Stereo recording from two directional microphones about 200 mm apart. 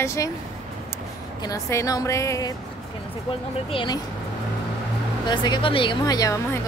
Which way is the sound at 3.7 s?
25° left (ahead or behind).